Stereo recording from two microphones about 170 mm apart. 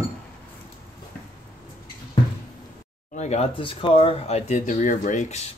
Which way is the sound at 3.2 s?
40° left (ahead or behind).